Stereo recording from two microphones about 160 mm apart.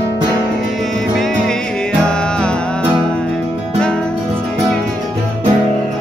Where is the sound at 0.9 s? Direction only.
5° left (ahead or behind).